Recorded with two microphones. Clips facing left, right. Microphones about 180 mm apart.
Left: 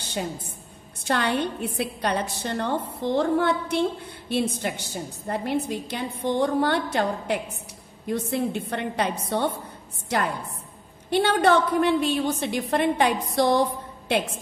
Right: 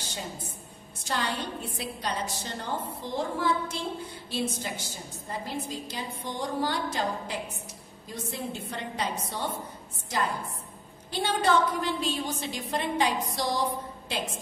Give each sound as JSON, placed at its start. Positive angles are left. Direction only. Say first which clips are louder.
{"t": 0.0, "sound": "a sound", "louder": "left 8 dB", "side_deg": 60}
{"t": 1.0, "sound": "a woman's voice", "louder": "left 7 dB", "side_deg": 60}
{"t": 11.1, "sound": "a woman's voice", "louder": "left 6 dB", "side_deg": 65}